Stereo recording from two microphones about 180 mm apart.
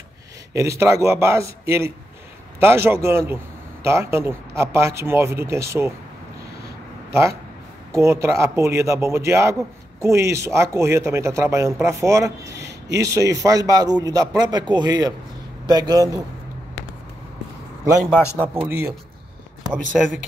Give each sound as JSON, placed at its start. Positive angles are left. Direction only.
{"t": 0.5, "sound": "speech", "side_deg": -15}
{"t": 7.1, "sound": "a man's voice", "side_deg": -15}
{"t": 18.1, "sound": "a man's voice", "side_deg": 15}
{"t": 18.7, "sound": "speech", "side_deg": -15}
{"t": 19.9, "sound": "speech", "side_deg": 0}